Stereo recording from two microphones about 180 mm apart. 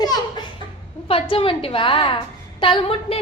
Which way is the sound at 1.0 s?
30° left (ahead or behind).